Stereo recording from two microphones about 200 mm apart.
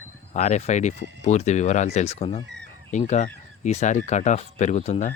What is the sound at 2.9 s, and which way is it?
Speech, 35° left (ahead or behind).